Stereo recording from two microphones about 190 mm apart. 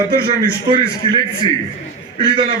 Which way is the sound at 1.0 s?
30° right (ahead or behind).